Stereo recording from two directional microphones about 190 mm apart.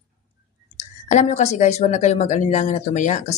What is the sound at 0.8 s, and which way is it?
Speech, 40° left (ahead or behind).